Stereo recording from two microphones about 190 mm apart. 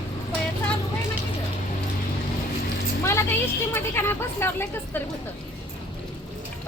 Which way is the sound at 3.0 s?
15° left (ahead or behind).